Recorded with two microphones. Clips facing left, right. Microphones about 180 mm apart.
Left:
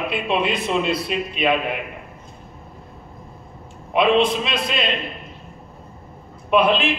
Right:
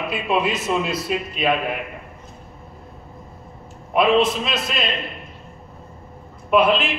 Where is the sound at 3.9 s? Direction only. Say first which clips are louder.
Even; 5° right (ahead or behind).